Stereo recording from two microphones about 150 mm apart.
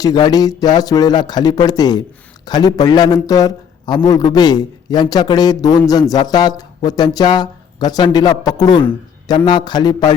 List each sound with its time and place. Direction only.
0.0 s a man's voice: 25° left (ahead or behind)